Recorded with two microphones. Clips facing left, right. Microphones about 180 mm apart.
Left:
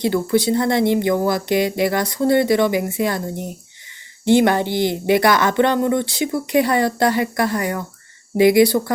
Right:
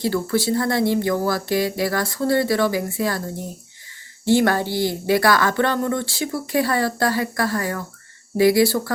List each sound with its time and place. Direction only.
0.0 s speech: 20° left (ahead or behind)